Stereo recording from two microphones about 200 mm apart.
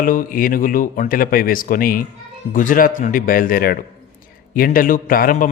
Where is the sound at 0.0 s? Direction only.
45° left (ahead or behind).